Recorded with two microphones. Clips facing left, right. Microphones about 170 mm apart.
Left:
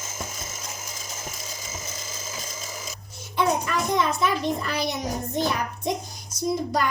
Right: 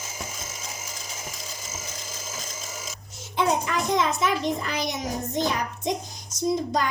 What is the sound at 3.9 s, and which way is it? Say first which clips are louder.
A child's voice: even; 20° right (ahead or behind).